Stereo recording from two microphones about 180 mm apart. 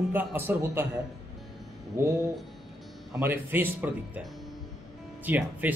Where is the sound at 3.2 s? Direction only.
10° right (ahead or behind).